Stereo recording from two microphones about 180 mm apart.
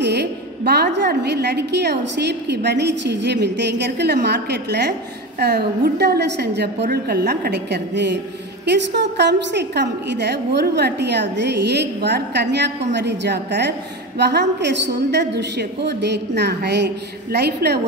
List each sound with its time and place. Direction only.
0.0 s a woman's voice: 70° right (ahead or behind)